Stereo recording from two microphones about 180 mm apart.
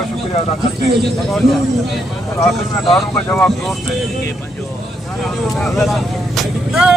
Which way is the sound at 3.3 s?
5° left (ahead or behind).